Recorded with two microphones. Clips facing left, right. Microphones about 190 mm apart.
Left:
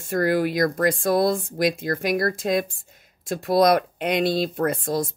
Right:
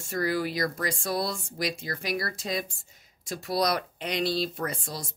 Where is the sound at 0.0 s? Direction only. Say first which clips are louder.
Left 7 dB; 55° left (ahead or behind).